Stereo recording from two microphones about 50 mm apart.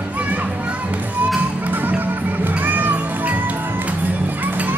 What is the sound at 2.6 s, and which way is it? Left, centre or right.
Music, right.